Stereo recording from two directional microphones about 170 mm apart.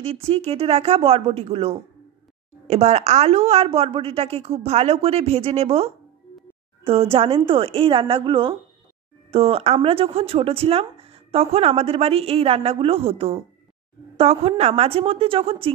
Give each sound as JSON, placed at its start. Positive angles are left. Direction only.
{"t": 0.0, "sound": "a woman's voice", "side_deg": -35}